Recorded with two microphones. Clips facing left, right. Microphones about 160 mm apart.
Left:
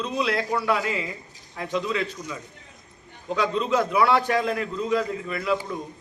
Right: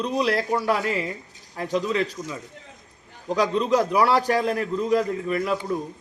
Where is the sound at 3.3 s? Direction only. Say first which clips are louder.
Right 2 dB; 40° right (ahead or behind).